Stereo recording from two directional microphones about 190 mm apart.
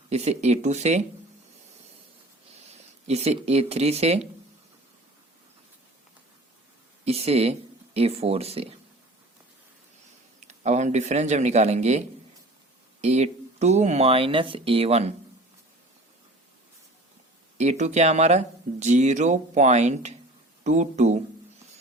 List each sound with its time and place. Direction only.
0.1 s speech: 35° right (ahead or behind)
3.1 s speech: 35° right (ahead or behind)
7.0 s speech: 30° right (ahead or behind)
10.4 s speech: 40° right (ahead or behind)
17.6 s speech: 35° right (ahead or behind)